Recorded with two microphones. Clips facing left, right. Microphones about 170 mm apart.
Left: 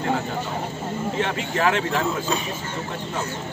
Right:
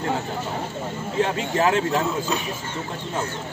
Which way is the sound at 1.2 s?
30° right (ahead or behind).